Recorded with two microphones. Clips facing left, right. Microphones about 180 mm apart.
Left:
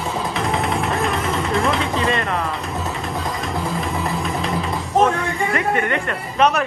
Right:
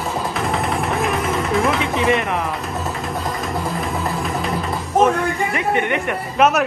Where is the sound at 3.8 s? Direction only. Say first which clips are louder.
Even; centre (ahead or behind).